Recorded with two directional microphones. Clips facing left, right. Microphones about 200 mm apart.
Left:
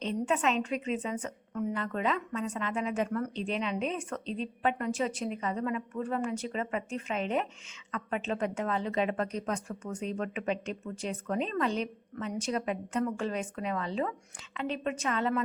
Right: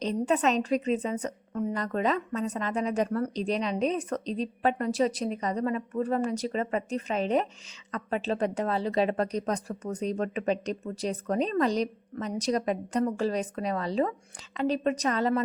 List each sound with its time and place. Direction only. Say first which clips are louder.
0.0 s a woman's voice: right 4 dB; 35° right (ahead or behind)